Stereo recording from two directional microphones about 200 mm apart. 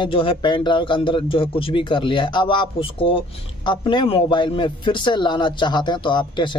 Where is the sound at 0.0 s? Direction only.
25° left (ahead or behind).